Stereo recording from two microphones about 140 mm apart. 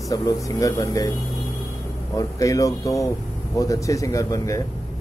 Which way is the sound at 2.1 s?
25° left (ahead or behind).